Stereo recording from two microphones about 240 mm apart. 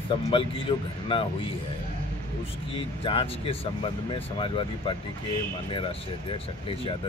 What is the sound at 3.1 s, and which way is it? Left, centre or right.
Speech, left.